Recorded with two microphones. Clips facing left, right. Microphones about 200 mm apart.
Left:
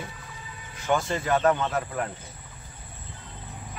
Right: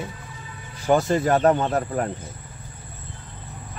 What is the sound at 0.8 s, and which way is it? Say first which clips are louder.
Speech: right 7 dB; 40° right (ahead or behind).